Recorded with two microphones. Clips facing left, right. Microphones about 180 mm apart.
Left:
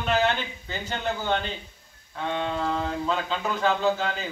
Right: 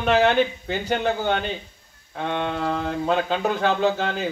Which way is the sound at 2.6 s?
45° right (ahead or behind).